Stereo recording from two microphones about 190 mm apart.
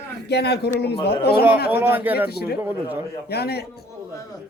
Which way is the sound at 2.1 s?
55° left (ahead or behind).